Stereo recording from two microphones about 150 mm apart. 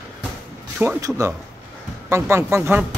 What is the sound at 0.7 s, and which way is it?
A man's voice, 20° right (ahead or behind).